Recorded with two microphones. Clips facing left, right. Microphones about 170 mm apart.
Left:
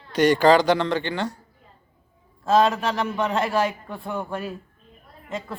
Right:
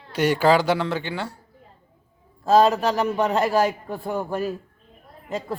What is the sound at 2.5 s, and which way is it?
A man's voice, 40° right (ahead or behind).